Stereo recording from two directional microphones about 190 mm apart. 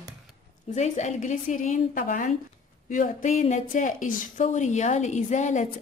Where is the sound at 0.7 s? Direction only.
40° left (ahead or behind).